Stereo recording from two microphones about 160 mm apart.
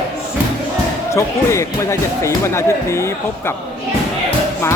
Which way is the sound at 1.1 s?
20° left (ahead or behind).